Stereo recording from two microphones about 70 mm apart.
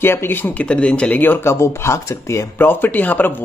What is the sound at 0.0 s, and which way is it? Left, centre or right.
Speech, left.